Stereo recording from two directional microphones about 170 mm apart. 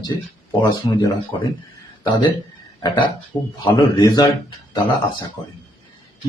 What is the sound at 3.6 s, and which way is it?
Speech, 25° left (ahead or behind).